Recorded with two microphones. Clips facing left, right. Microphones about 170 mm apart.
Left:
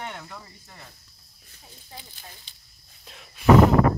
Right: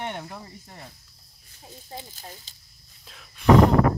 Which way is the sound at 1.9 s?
40° right (ahead or behind).